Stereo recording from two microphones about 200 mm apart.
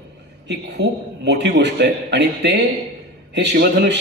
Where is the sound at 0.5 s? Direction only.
60° right (ahead or behind).